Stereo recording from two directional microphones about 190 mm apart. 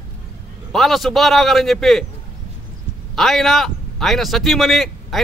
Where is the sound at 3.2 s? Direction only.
Centre (ahead or behind).